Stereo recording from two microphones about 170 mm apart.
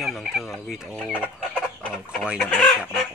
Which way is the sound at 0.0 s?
Centre (ahead or behind).